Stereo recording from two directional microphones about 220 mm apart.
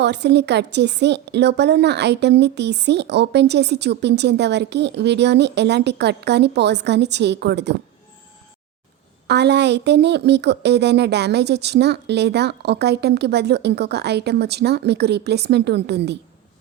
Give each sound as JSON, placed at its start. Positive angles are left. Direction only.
{"t": 0.0, "sound": "a woman's voice", "side_deg": -50}
{"t": 9.2, "sound": "a woman's voice", "side_deg": -50}